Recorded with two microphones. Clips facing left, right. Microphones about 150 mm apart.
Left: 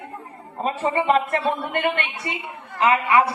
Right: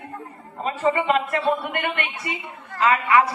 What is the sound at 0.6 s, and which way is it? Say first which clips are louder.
A woman's voice: even; 30° left (ahead or behind).